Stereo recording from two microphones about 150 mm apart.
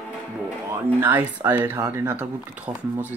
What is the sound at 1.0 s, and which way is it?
Speech, 15° right (ahead or behind).